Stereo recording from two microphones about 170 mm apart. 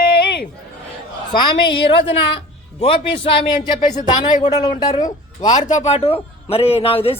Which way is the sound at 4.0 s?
45° left (ahead or behind).